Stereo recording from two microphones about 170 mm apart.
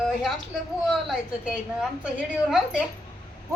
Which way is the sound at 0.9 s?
5° right (ahead or behind).